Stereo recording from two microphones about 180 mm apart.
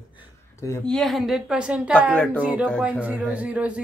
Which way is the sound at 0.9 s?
Centre (ahead or behind).